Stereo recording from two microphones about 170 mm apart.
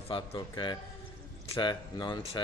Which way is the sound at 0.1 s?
30° left (ahead or behind).